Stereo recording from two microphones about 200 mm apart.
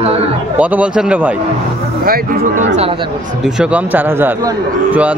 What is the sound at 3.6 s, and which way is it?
Speech, 5° right (ahead or behind).